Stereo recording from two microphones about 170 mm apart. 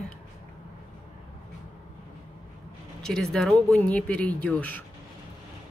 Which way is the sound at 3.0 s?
5° left (ahead or behind).